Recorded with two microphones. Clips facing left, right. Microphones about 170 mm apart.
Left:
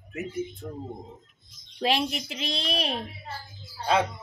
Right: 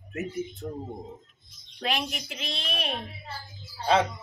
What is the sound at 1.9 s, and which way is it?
A woman's voice, 35° left (ahead or behind).